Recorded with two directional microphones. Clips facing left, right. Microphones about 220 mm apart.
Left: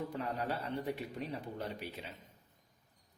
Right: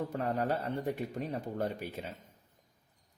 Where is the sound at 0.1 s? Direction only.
45° right (ahead or behind).